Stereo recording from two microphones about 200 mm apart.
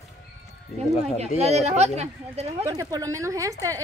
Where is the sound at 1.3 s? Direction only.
35° right (ahead or behind).